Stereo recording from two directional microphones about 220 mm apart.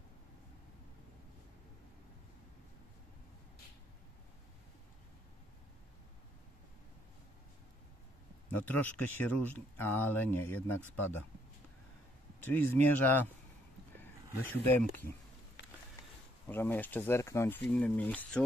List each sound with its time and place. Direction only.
8.5 s speech: 10° left (ahead or behind)
12.4 s speech: 10° left (ahead or behind)
14.5 s speech: 10° left (ahead or behind)
15.6 s a sound: 50° left (ahead or behind)
16.4 s speech: 10° left (ahead or behind)